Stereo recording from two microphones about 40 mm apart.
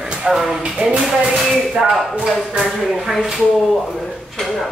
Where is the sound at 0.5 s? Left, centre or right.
Right.